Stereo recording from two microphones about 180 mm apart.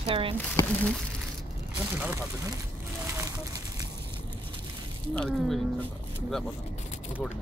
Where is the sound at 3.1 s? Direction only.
15° right (ahead or behind).